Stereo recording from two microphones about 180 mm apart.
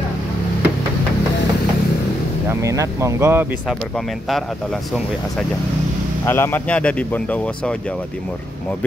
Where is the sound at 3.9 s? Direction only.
Centre (ahead or behind).